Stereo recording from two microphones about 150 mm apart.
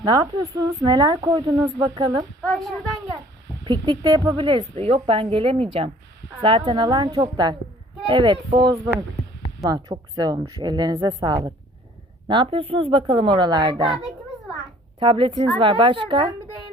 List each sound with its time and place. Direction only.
0.0 s speech: 25° right (ahead or behind)
3.6 s a woman's voice: 30° right (ahead or behind)